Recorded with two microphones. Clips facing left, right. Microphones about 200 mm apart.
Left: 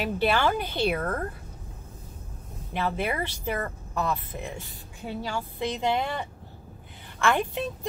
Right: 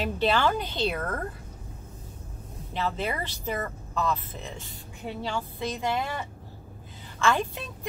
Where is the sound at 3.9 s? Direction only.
15° left (ahead or behind).